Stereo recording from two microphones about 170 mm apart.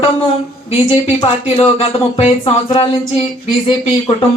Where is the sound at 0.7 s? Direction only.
30° left (ahead or behind).